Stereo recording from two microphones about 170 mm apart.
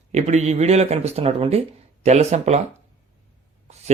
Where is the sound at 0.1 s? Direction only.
40° right (ahead or behind).